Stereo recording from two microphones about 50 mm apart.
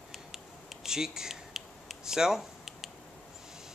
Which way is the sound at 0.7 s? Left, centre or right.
Centre.